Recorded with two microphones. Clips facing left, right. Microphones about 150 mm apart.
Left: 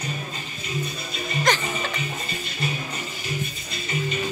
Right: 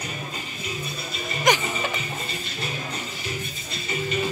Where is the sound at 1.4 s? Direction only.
15° right (ahead or behind).